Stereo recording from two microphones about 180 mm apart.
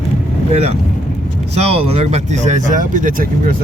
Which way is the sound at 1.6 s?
35° right (ahead or behind).